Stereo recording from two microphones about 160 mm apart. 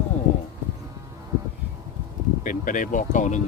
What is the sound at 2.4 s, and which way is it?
Speech, 55° left (ahead or behind).